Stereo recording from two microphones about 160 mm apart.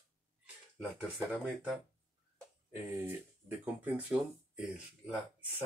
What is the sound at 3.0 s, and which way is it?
Speech, 10° right (ahead or behind).